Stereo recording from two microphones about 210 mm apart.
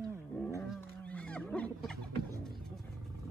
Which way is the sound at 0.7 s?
5° left (ahead or behind).